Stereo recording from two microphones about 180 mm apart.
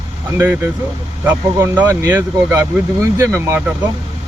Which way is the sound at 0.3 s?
15° right (ahead or behind).